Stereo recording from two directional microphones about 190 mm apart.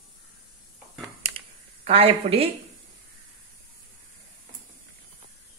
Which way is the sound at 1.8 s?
35° right (ahead or behind).